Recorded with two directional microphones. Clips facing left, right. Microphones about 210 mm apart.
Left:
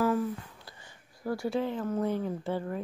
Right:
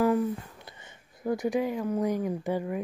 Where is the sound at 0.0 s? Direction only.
20° right (ahead or behind).